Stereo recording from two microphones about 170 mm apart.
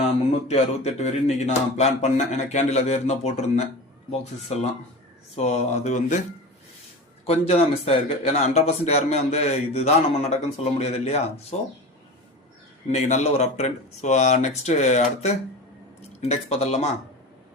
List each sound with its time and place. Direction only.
0.4 s speech: 40° left (ahead or behind)
7.3 s speech: 35° left (ahead or behind)
12.9 s speech: 40° left (ahead or behind)